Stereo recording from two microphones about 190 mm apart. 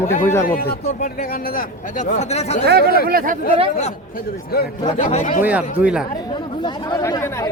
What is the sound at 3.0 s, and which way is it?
Speech, 50° right (ahead or behind).